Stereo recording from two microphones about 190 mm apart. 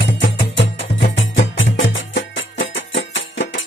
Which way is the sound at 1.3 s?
80° left.